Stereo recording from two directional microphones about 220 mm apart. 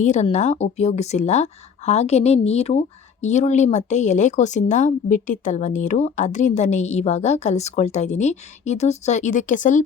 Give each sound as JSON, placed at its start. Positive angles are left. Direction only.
{"t": 0.0, "sound": "speech", "side_deg": 30}